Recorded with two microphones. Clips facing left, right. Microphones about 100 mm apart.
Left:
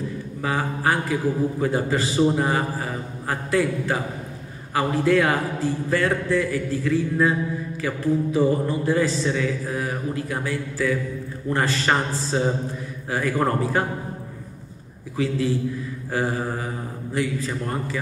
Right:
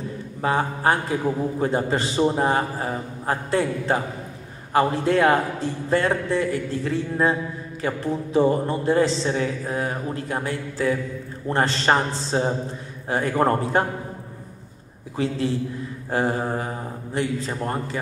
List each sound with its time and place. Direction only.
0.4 s a man's voice: 25° right (ahead or behind)
15.1 s a man's voice: 25° right (ahead or behind)